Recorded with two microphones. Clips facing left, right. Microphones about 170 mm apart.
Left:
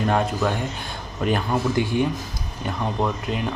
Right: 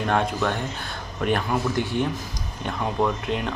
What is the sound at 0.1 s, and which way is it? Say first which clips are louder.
Speech: left 1 dB; 5° left (ahead or behind).